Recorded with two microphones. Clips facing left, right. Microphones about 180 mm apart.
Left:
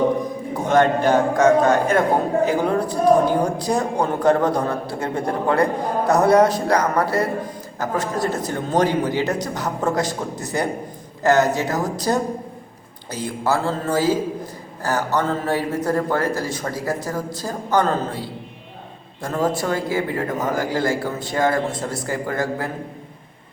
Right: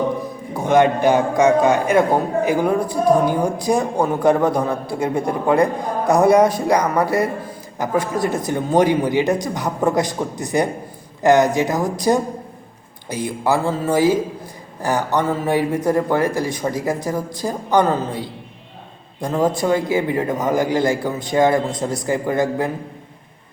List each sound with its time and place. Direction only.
0.5 s a man's voice: 10° right (ahead or behind)